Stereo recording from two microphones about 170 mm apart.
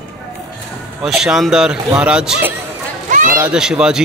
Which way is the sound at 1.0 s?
5° right (ahead or behind).